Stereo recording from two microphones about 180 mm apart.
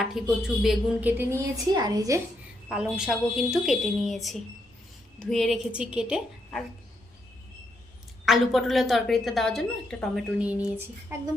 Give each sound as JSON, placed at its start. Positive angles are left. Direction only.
{"t": 0.0, "sound": "a woman's voice", "side_deg": 0}
{"t": 1.7, "sound": "a woman's voice", "side_deg": -20}
{"t": 2.6, "sound": "a woman's voice", "side_deg": -5}
{"t": 8.2, "sound": "a woman's voice", "side_deg": 0}